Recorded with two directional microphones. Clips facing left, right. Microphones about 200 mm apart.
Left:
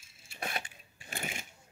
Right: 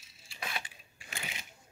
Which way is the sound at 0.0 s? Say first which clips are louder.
Left 3 dB; 50° left (ahead or behind).